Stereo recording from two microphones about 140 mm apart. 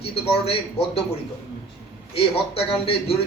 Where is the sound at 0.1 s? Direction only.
45° left (ahead or behind).